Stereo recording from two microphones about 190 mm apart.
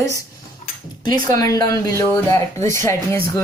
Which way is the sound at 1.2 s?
20° left (ahead or behind).